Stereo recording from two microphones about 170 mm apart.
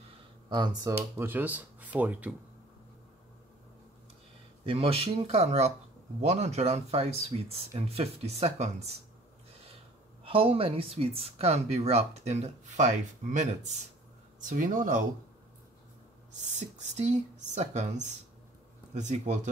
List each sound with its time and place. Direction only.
0.5 s speech: 25° right (ahead or behind)
0.9 s speech: 10° right (ahead or behind)
4.6 s speech: 35° right (ahead or behind)
10.2 s speech: 35° right (ahead or behind); by 15.0 s 50° right (ahead or behind)
16.5 s speech: 45° right (ahead or behind)